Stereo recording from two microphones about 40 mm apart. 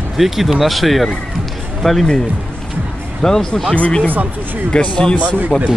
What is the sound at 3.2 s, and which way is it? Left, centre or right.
Speech, centre.